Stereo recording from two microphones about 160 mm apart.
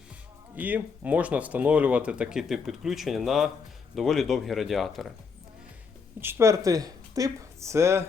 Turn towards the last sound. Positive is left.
turn(degrees=-15)  # may be behind; listen again after turning